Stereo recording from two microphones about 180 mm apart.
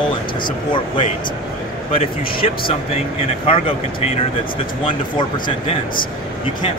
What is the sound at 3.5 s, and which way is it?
Speech, 35° left (ahead or behind).